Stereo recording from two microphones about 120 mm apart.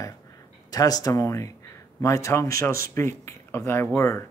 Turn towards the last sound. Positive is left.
turn(degrees=25)  # may be behind; listen again after turning